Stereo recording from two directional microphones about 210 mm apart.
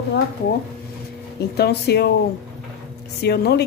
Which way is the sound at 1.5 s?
50° left (ahead or behind).